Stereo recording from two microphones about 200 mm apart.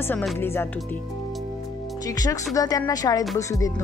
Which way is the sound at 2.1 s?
15° left (ahead or behind).